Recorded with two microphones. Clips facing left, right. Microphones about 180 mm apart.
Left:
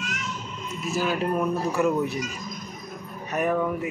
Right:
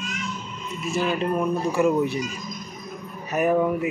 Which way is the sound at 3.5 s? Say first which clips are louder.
Right 4 dB; 15° right (ahead or behind).